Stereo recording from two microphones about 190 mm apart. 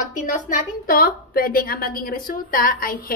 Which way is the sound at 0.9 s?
50° left (ahead or behind).